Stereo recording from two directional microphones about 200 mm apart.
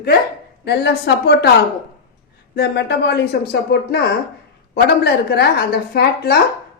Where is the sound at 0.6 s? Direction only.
55° left (ahead or behind).